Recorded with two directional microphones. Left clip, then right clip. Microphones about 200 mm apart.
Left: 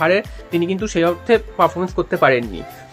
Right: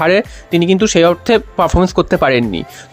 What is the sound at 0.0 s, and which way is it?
Speech, 50° right (ahead or behind).